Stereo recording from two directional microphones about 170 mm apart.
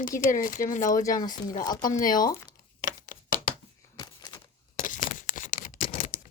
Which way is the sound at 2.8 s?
50° left (ahead or behind).